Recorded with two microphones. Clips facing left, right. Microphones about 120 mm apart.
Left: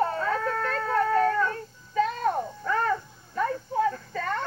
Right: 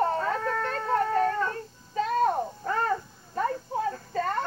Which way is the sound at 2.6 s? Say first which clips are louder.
Left 2 dB; 35° right (ahead or behind).